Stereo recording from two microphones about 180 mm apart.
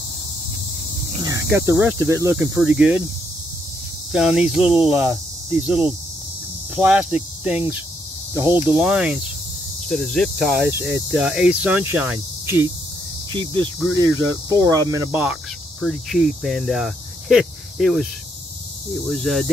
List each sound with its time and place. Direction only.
1.1 s speech: 20° right (ahead or behind)
4.1 s speech: 5° right (ahead or behind)
6.7 s cricket: 5° right (ahead or behind)
8.4 s speech: 10° right (ahead or behind)
10.7 s speech: 10° right (ahead or behind)
13.3 s speech: 25° right (ahead or behind)
15.8 s speech: centre (ahead or behind)
19.0 s speech: centre (ahead or behind)